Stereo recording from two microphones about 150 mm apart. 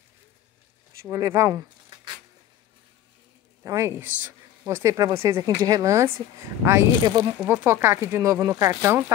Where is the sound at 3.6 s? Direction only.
20° right (ahead or behind).